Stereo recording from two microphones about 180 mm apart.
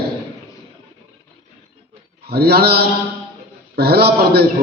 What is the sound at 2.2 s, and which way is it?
Mantra, 60° right (ahead or behind).